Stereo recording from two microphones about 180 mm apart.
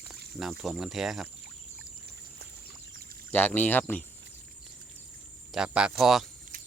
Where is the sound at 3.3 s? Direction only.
10° left (ahead or behind).